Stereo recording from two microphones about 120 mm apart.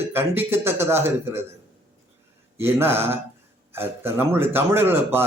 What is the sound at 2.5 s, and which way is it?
Speech, 20° right (ahead or behind).